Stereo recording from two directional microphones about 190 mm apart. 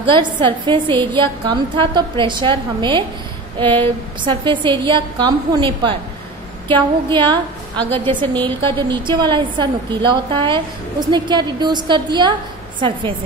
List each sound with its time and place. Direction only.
0.0 s a woman's voice: 25° right (ahead or behind)